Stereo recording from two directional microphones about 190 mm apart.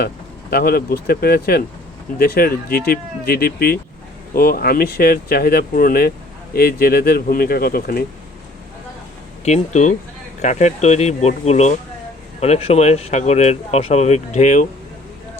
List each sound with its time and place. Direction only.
0.5 s speech: 55° left (ahead or behind)
9.4 s speech: 35° left (ahead or behind)